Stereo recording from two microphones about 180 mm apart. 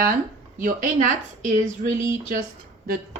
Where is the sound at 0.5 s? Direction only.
50° right (ahead or behind).